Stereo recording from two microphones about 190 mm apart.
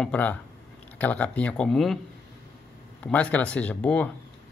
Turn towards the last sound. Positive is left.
turn(degrees=5)  # may be behind; listen again after turning